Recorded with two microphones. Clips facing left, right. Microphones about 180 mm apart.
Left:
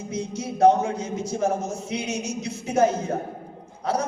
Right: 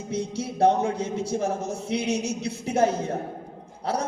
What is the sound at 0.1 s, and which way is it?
Speech, 30° right (ahead or behind).